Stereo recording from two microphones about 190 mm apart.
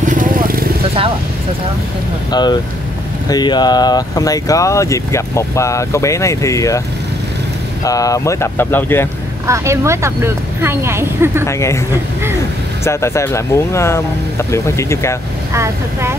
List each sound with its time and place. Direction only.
0.0 s vehicle: 45° right (ahead or behind)
2.3 s speech: 20° left (ahead or behind)
7.8 s speech: 20° left (ahead or behind)
9.5 s speech: 15° right (ahead or behind)
11.4 s speech: 15° left (ahead or behind)
12.8 s speech: 15° left (ahead or behind)
15.5 s speech: 15° right (ahead or behind)